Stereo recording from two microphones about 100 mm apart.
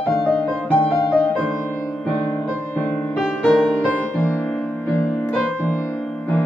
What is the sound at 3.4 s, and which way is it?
Music, 15° left (ahead or behind).